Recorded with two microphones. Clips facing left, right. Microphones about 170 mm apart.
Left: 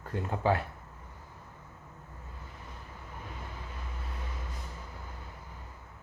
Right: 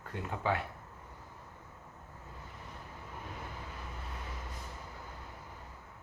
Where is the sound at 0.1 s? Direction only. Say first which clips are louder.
Left 5 dB; 35° left (ahead or behind).